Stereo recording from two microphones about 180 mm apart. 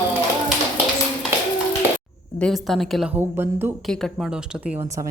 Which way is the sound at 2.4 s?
Centre (ahead or behind).